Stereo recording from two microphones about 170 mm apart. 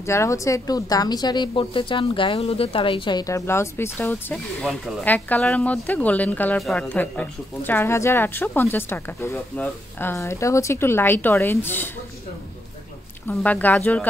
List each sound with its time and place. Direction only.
0.0 s speech: 15° left (ahead or behind)
13.3 s speech: 10° left (ahead or behind)